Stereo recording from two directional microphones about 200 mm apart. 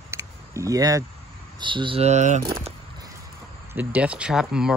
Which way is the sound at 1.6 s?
25° right (ahead or behind).